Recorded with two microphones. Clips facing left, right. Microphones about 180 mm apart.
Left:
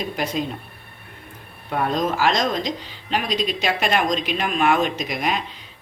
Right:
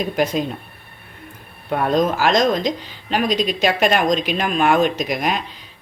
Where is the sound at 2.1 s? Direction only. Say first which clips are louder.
Right 4 dB; 50° right (ahead or behind).